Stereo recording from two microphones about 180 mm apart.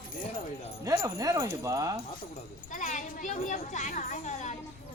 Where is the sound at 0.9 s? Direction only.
20° right (ahead or behind).